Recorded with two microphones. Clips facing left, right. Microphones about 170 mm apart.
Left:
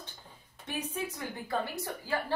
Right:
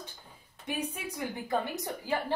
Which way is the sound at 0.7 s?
10° right (ahead or behind).